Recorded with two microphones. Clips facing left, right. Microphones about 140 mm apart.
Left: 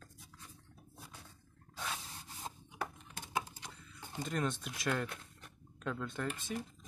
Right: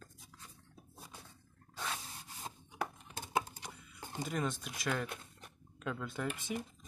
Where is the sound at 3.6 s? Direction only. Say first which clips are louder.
Right 2 dB; 15° right (ahead or behind).